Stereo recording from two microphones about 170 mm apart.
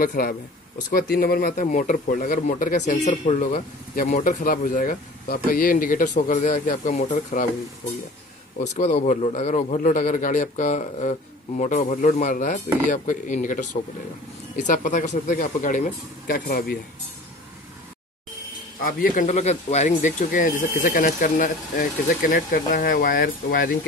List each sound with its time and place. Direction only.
0.0 s speech: 60° left (ahead or behind)
1.5 s a man's voice: 50° left (ahead or behind)
8.5 s a man's voice: 45° left (ahead or behind); by 16.7 s 60° left (ahead or behind)
18.8 s a man's voice: 55° left (ahead or behind)